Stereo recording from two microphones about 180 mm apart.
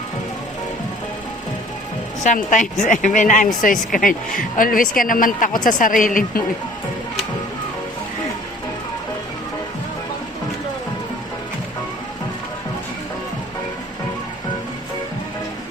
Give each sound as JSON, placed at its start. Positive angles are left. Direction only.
{"t": 2.2, "sound": "a woman's voice", "side_deg": 45}